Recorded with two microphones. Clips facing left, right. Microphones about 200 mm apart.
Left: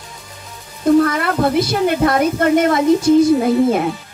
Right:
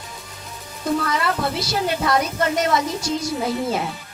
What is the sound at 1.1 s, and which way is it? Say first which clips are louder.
A woman's voice: left 7 dB; 55° left (ahead or behind).